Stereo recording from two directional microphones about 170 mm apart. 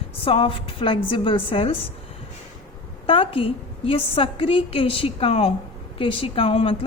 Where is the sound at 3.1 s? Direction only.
30° left (ahead or behind).